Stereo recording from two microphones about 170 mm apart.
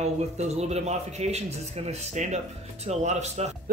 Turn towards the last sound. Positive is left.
turn(degrees=-40)  # may be behind; listen again after turning